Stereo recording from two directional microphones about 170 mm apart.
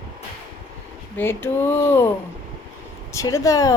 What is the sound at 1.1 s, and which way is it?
Speech, 10° left (ahead or behind).